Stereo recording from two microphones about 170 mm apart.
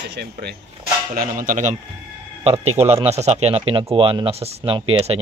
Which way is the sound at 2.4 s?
35° right (ahead or behind).